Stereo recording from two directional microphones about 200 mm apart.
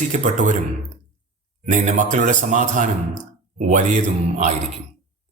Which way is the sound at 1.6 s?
40° right (ahead or behind).